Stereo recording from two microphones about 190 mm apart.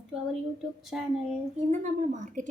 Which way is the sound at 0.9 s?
Centre (ahead or behind).